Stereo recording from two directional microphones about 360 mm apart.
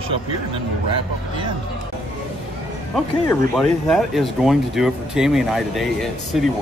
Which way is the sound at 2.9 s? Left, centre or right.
Centre.